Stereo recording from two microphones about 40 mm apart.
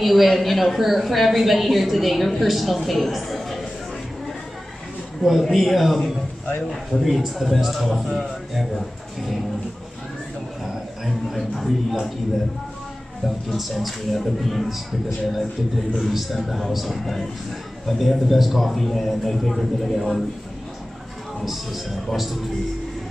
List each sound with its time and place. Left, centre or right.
0.0 s a woman's voice: centre
5.2 s a woman's voice: centre
10.7 s speech: centre
13.6 s a woman's voice: centre
21.4 s a woman's voice: centre